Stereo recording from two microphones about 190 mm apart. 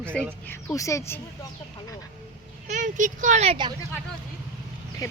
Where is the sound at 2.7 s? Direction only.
40° right (ahead or behind).